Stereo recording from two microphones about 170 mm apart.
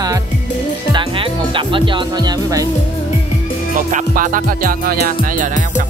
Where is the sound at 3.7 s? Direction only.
55° right (ahead or behind).